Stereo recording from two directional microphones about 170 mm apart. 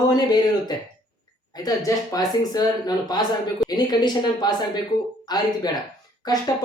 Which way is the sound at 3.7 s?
25° left (ahead or behind).